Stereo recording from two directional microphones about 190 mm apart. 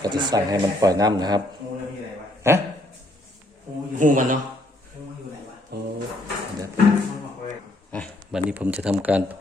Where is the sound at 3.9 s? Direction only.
45° right (ahead or behind).